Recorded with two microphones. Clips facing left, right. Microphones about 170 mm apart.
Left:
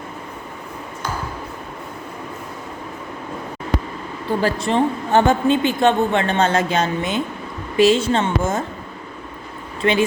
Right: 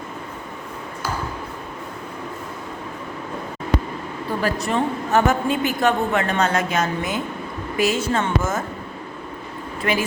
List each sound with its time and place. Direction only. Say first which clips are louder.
4.4 s a woman's voice: left 3 dB; 30° left (ahead or behind)
9.8 s a woman's voice: left 4 dB; 25° left (ahead or behind)